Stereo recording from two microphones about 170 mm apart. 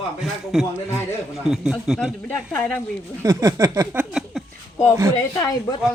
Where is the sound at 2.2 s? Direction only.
5° left (ahead or behind).